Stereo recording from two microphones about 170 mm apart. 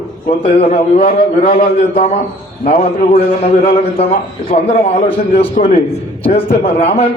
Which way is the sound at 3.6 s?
40° left (ahead or behind).